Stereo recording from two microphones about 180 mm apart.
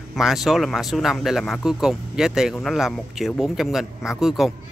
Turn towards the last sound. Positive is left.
turn(degrees=0)  # may be behind; listen again after turning